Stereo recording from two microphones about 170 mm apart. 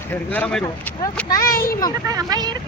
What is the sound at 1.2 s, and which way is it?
Speech, 20° left (ahead or behind).